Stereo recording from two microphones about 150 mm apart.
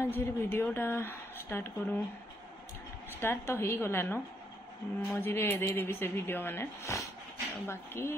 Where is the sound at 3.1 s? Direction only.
15° left (ahead or behind).